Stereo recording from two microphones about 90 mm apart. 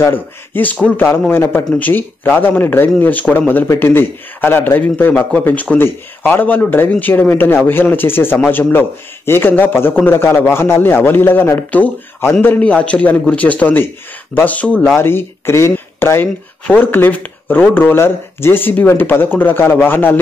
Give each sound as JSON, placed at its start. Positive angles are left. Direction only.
{"t": 0.0, "sound": "a man's voice", "side_deg": 20}
{"t": 15.0, "sound": "a man's voice", "side_deg": 25}